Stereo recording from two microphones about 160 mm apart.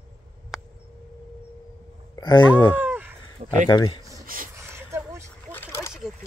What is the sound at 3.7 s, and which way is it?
Speech, 30° left (ahead or behind).